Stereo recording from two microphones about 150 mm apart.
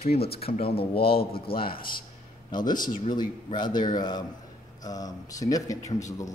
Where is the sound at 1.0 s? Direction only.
90° left.